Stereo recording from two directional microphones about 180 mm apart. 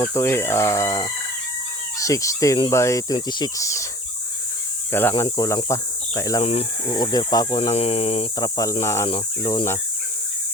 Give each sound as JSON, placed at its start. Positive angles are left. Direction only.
{"t": 0.0, "sound": "speech", "side_deg": 15}
{"t": 4.9, "sound": "speech", "side_deg": 15}
{"t": 6.4, "sound": "speech", "side_deg": 35}
{"t": 6.9, "sound": "speech", "side_deg": 20}
{"t": 8.4, "sound": "speech", "side_deg": 20}